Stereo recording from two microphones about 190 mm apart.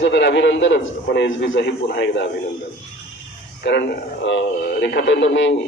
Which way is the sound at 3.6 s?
65° left (ahead or behind).